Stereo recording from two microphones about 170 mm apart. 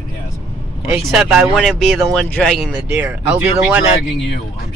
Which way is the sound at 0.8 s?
5° right (ahead or behind).